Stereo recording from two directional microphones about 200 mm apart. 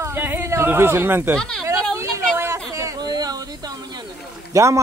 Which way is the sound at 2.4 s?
15° right (ahead or behind).